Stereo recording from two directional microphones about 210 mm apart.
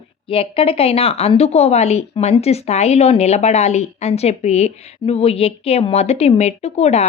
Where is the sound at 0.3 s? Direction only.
25° left (ahead or behind).